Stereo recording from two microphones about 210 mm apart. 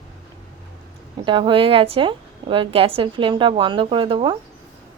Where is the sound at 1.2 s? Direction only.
25° right (ahead or behind).